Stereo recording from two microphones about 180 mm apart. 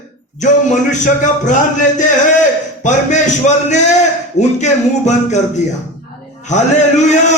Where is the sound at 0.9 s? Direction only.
45° left (ahead or behind).